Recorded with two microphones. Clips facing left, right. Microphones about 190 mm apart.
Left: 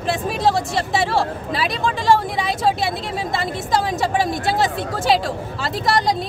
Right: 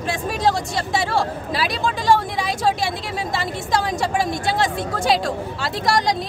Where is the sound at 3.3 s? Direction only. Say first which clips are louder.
Left 1 dB; centre (ahead or behind).